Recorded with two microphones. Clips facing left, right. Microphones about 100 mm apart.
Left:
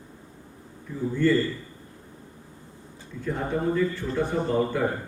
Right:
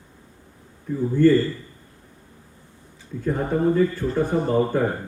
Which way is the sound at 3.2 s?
45° right (ahead or behind).